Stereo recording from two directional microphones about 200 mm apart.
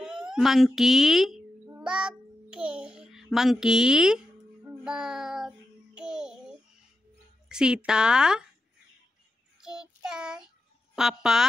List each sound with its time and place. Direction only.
0.0 s a sound: 5° right (ahead or behind)
4.8 s music: 5° right (ahead or behind)
7.4 s a woman's voice: 5° right (ahead or behind)
9.6 s child singing: 5° right (ahead or behind)
11.0 s a woman's voice: 5° right (ahead or behind)